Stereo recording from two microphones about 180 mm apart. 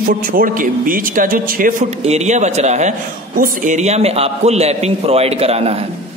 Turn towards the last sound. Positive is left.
turn(degrees=-35)  # may be behind; listen again after turning